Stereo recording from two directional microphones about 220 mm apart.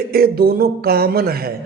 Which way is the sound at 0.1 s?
45° right (ahead or behind).